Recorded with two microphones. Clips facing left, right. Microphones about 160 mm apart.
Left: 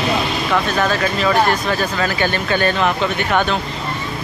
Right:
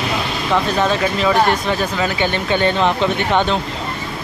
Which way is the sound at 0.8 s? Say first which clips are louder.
Right 1 dB; 25° right (ahead or behind).